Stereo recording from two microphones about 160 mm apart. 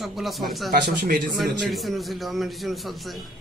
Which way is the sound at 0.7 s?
70° right (ahead or behind).